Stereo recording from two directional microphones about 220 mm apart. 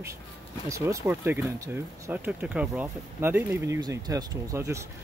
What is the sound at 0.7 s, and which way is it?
Speech, 15° right (ahead or behind).